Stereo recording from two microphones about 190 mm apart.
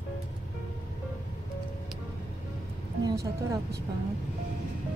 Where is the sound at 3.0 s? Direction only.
15° right (ahead or behind).